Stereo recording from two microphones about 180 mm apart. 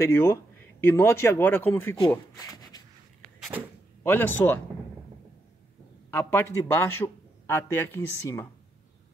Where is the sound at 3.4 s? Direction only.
10° right (ahead or behind).